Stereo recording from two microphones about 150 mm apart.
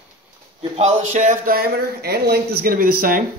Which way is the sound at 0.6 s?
45° right (ahead or behind).